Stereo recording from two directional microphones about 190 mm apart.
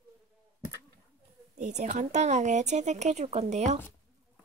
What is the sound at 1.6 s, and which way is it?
A woman's voice, 40° right (ahead or behind).